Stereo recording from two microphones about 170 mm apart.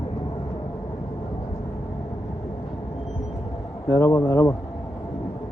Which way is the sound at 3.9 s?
15° left (ahead or behind).